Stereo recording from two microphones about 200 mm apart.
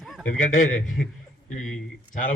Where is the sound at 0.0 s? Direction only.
Centre (ahead or behind).